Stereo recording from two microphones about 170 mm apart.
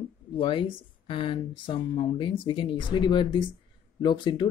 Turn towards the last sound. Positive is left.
turn(degrees=25)  # may be behind; listen again after turning